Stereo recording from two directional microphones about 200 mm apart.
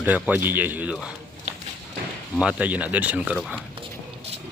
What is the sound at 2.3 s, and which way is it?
Speech, 5° right (ahead or behind).